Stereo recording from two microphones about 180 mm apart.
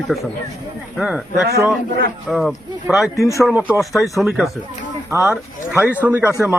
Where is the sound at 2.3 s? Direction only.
Centre (ahead or behind).